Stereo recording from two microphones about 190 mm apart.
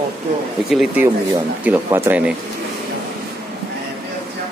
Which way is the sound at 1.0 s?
15° right (ahead or behind).